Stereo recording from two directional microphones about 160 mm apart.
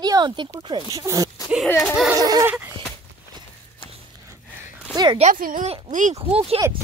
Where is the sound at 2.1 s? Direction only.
25° right (ahead or behind).